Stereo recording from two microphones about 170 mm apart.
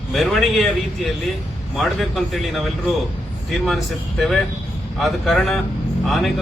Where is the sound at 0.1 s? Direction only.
Centre (ahead or behind).